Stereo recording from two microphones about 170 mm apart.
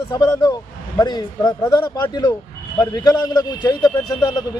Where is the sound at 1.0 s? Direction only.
25° left (ahead or behind).